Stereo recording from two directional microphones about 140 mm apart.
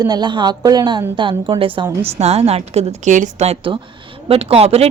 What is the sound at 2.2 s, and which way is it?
Speech, 50° right (ahead or behind).